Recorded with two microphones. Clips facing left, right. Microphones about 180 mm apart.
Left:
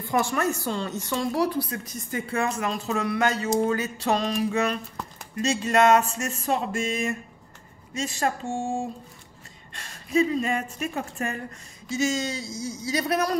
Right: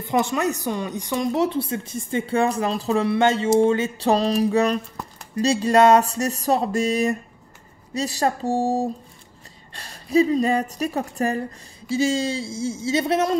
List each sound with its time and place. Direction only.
0.0 s a woman's voice: 20° right (ahead or behind)